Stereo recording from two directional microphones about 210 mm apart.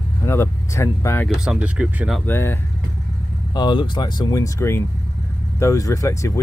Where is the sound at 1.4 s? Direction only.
5° right (ahead or behind).